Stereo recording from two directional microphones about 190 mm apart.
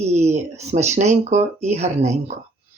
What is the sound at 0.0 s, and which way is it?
Speech, 35° right (ahead or behind).